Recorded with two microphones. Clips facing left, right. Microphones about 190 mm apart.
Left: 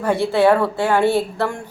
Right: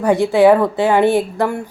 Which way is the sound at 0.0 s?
15° right (ahead or behind).